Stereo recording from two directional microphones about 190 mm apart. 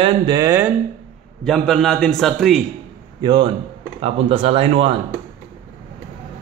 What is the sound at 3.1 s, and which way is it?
A man's voice, 20° right (ahead or behind).